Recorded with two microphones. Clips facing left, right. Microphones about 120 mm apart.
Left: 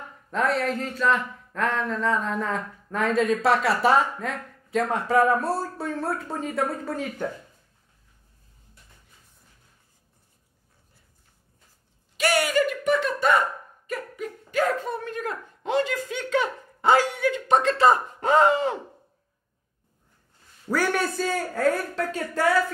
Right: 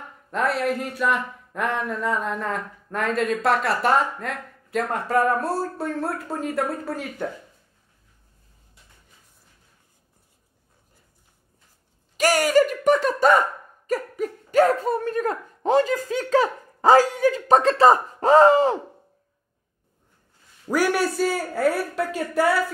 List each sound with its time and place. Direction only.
0.3 s speech: 5° right (ahead or behind)
12.2 s speech: 40° right (ahead or behind)
20.7 s a man's voice: 10° right (ahead or behind)